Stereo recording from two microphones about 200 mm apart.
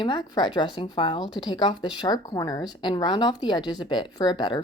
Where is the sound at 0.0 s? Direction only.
25° left (ahead or behind).